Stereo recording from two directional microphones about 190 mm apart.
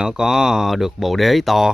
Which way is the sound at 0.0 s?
5° right (ahead or behind).